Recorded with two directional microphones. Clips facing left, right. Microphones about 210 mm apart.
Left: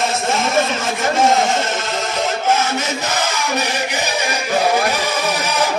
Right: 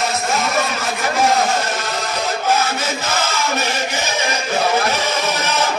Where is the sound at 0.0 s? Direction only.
30° left (ahead or behind); by 5.7 s 15° left (ahead or behind).